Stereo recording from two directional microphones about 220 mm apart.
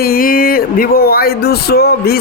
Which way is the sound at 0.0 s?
40° left (ahead or behind).